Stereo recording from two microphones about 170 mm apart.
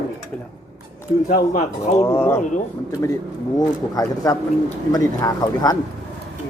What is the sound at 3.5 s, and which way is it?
Speech, 20° left (ahead or behind).